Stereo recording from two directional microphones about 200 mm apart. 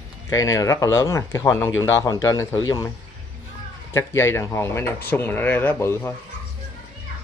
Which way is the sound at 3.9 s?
15° left (ahead or behind).